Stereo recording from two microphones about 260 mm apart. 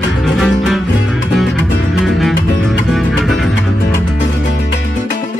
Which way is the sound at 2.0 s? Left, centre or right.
Centre.